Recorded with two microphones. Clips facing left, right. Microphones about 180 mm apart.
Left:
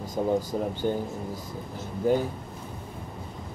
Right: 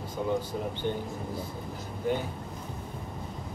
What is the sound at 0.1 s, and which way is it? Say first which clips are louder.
Speech: left 4 dB; 40° left (ahead or behind).